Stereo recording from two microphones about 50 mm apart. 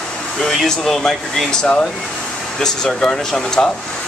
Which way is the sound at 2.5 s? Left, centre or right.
Centre.